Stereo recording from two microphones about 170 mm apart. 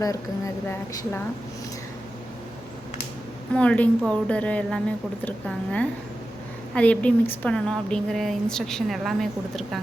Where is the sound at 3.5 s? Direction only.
5° left (ahead or behind).